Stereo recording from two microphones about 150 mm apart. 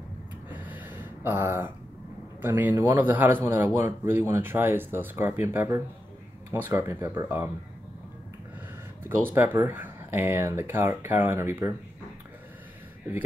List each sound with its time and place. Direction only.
0.5 s a sound: 10° right (ahead or behind)
2.4 s a man's voice: 15° right (ahead or behind)
9.0 s a man's voice: 15° right (ahead or behind)